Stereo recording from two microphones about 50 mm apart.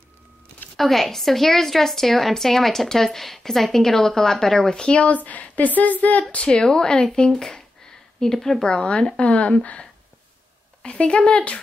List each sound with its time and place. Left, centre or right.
0.7 s a woman's voice: centre; by 6.2 s left
6.5 s a woman's voice: centre
8.7 s speech: left